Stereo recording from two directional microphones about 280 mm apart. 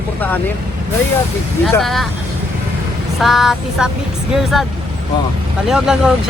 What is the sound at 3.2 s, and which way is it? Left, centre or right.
Speech, centre.